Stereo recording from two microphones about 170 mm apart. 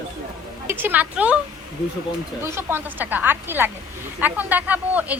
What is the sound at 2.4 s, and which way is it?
Speech, 15° right (ahead or behind).